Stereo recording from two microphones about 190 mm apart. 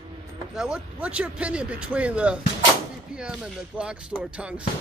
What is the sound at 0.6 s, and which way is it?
Speech, 5° right (ahead or behind).